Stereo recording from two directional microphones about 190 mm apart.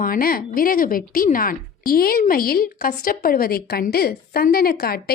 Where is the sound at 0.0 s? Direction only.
50° left (ahead or behind).